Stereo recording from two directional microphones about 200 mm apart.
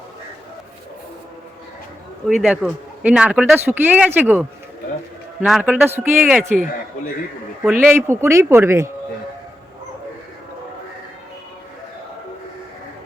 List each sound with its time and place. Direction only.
2.2 s speech: centre (ahead or behind)